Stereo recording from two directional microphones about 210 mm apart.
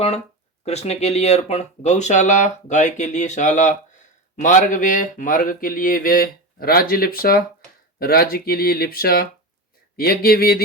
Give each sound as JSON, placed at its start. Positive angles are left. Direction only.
{"t": 0.6, "sound": "speech", "side_deg": 30}